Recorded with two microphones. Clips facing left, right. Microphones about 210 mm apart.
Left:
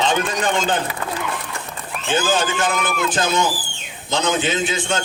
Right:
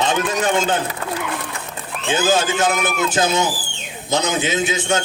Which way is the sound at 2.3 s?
45° right (ahead or behind).